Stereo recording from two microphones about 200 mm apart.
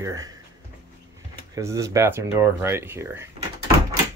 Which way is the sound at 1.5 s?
15° right (ahead or behind).